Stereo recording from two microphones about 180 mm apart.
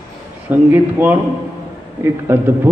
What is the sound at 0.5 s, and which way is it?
A man's voice, 10° right (ahead or behind).